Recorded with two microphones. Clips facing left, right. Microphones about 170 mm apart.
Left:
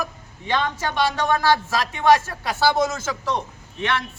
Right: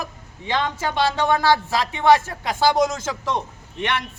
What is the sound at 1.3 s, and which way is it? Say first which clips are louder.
Speech: right 1 dB; 20° right (ahead or behind).